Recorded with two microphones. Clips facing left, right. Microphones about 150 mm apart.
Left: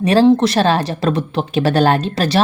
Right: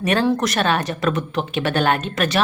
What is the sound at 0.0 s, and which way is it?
Speech, 30° left (ahead or behind).